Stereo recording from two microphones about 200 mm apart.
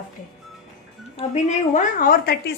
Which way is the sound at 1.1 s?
35° left (ahead or behind).